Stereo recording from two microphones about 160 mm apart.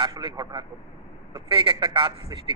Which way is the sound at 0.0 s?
30° right (ahead or behind).